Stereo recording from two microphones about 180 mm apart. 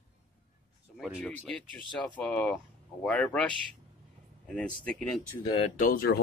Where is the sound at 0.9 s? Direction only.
Centre (ahead or behind).